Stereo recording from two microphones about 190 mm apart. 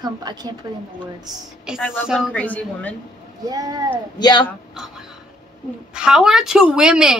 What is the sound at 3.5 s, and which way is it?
Speech, 20° right (ahead or behind).